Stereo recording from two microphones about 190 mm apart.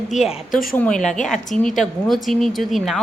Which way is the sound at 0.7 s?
5° left (ahead or behind).